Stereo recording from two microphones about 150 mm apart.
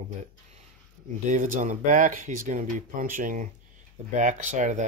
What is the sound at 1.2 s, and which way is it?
Speech, 60° right (ahead or behind).